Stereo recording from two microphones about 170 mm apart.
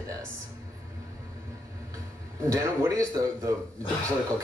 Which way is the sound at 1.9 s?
20° right (ahead or behind).